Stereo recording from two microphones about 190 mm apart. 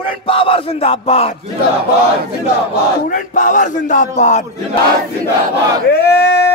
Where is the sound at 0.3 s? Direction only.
30° left (ahead or behind).